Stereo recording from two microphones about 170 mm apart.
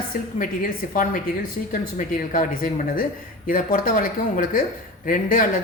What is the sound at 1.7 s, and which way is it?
Speech, 50° left (ahead or behind).